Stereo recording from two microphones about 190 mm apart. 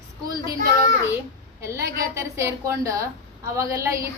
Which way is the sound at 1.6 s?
15° right (ahead or behind).